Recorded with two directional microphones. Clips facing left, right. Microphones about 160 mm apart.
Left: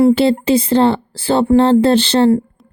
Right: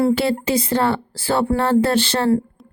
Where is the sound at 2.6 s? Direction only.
Centre (ahead or behind).